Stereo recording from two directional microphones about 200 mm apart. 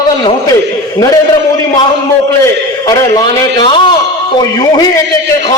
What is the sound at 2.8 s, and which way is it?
A man's voice, 20° left (ahead or behind).